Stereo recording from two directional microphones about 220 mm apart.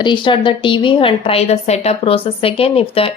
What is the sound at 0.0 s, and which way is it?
A woman's voice, 20° left (ahead or behind).